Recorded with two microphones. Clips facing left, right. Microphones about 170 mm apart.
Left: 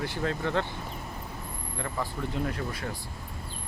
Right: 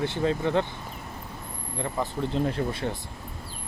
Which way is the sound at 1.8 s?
20° right (ahead or behind).